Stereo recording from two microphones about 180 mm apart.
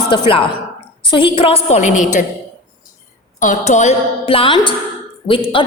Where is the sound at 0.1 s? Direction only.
30° left (ahead or behind).